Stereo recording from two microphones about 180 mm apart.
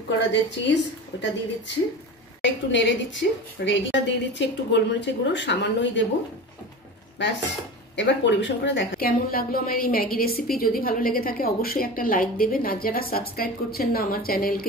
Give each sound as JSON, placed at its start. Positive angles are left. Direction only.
{"t": 0.3, "sound": "a woman's voice", "side_deg": 75}
{"t": 1.1, "sound": "speech", "side_deg": 90}
{"t": 2.4, "sound": "a woman's voice", "side_deg": 90}
{"t": 7.2, "sound": "a woman's voice", "side_deg": 75}
{"t": 8.9, "sound": "a woman's voice", "side_deg": 55}